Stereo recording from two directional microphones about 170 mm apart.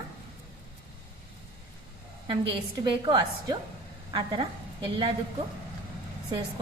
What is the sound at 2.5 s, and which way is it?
A woman's voice, 30° right (ahead or behind).